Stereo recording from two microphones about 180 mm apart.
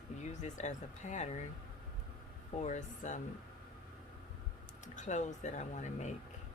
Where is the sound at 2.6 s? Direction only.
40° left (ahead or behind).